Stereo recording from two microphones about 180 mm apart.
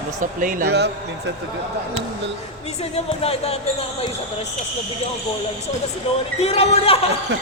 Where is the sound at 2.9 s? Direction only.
35° left (ahead or behind).